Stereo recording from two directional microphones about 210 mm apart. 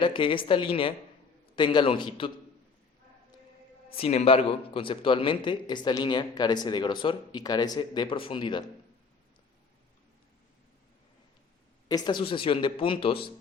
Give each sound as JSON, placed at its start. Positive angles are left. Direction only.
{"t": 0.0, "sound": "a man's voice", "side_deg": 25}
{"t": 3.9, "sound": "a man's voice", "side_deg": 30}
{"t": 11.9, "sound": "a man's voice", "side_deg": 20}